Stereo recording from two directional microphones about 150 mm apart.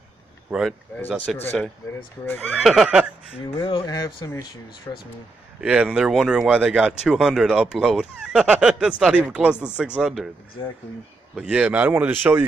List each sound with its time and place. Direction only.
0.5 s speech: 5° right (ahead or behind)
1.0 s speech: 5° left (ahead or behind)
2.6 s speech: centre (ahead or behind)
3.5 s speech: 35° left (ahead or behind)
5.6 s speech: 5° right (ahead or behind)
11.3 s speech: 5° right (ahead or behind)